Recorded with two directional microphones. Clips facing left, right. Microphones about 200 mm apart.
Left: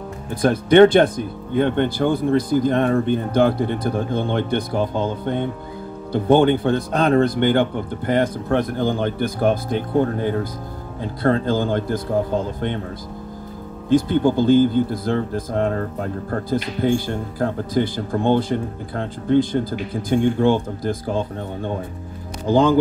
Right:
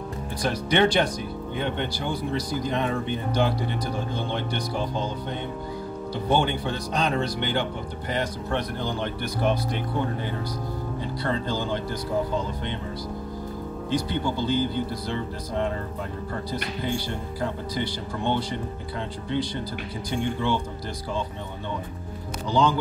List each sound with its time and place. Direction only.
0.3 s speech: 55° left (ahead or behind)
13.8 s speech: 50° left (ahead or behind)